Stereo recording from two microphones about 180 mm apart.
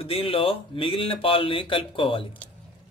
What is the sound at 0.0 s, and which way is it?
Speech, 30° left (ahead or behind).